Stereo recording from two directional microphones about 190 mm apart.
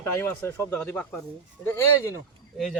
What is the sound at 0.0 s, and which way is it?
Speech, 15° left (ahead or behind).